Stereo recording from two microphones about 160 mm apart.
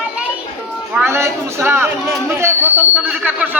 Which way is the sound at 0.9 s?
15° right (ahead or behind).